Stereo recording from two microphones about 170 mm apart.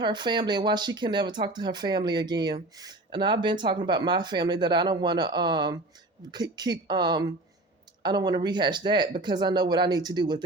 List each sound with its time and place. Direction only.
0.0 s speech: 25° right (ahead or behind)